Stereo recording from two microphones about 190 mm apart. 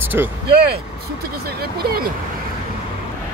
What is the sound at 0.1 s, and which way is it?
Speech, 10° right (ahead or behind).